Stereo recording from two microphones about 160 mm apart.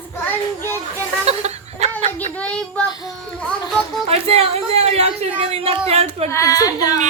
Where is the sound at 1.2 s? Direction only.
40° right (ahead or behind).